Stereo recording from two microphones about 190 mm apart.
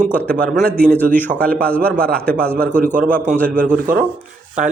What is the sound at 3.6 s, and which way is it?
Speech, 45° right (ahead or behind).